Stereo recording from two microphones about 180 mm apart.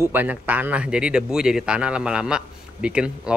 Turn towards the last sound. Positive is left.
turn(degrees=-5)  # may be behind; listen again after turning